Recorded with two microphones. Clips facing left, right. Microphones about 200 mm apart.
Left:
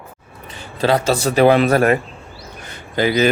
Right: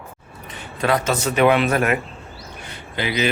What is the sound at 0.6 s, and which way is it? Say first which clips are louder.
Speech: left 4 dB; 30° left (ahead or behind).